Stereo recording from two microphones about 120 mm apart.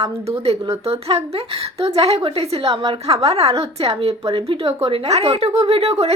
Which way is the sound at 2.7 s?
45° right (ahead or behind).